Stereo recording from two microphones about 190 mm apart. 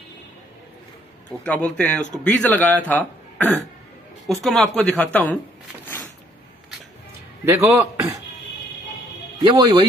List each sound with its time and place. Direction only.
1.4 s speech: 5° left (ahead or behind)
7.4 s a man's voice: 15° right (ahead or behind)
9.4 s speech: 20° right (ahead or behind)